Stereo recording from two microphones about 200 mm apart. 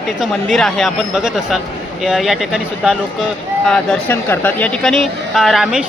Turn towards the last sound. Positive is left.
turn(degrees=-5)  # may be behind; listen again after turning